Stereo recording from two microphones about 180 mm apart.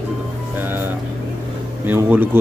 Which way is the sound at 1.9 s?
10° right (ahead or behind).